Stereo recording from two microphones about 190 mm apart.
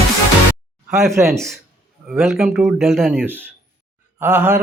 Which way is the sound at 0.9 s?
15° right (ahead or behind).